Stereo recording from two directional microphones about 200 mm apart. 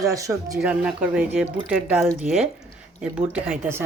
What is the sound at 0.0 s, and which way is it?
Speech, 15° right (ahead or behind).